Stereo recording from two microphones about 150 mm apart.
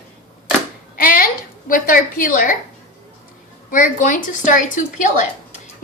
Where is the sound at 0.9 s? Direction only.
70° left (ahead or behind).